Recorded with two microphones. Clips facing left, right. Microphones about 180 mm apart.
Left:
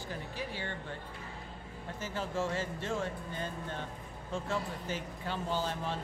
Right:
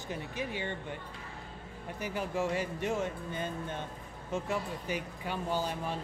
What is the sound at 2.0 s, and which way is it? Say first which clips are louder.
Speech: right 2 dB; 15° right (ahead or behind).